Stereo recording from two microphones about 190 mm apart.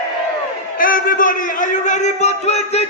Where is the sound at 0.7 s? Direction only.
50° left (ahead or behind).